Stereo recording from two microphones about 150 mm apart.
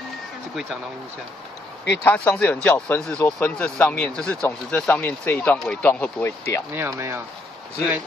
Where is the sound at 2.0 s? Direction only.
10° left (ahead or behind).